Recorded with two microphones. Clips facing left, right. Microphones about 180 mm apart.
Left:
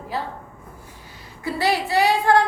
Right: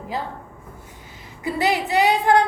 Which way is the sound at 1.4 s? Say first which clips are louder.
Right 1 dB; 20° right (ahead or behind).